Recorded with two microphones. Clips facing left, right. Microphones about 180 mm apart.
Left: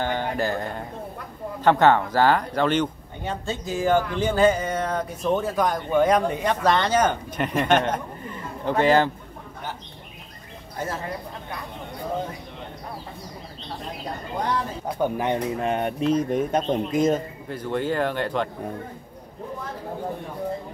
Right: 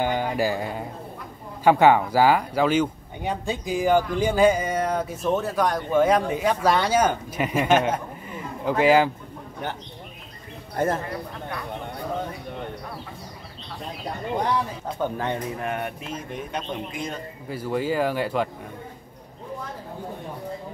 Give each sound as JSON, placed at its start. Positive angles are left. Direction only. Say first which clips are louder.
{"t": 0.0, "sound": "speech", "louder": "right 2 dB", "side_deg": -10}
{"t": 10.8, "sound": "speech", "louder": "right 7 dB", "side_deg": -55}
{"t": 15.0, "sound": "speech", "louder": "left 3 dB", "side_deg": 15}
{"t": 17.5, "sound": "speech", "louder": "even", "side_deg": -5}